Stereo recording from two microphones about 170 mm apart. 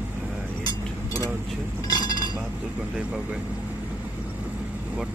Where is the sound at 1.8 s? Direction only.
25° left (ahead or behind).